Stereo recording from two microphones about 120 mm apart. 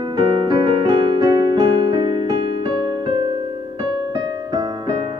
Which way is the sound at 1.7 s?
45° right (ahead or behind).